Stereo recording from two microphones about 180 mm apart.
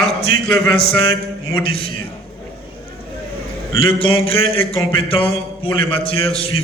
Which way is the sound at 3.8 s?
30° left (ahead or behind).